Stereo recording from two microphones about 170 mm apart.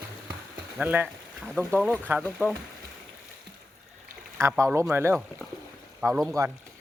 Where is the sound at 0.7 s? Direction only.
10° right (ahead or behind).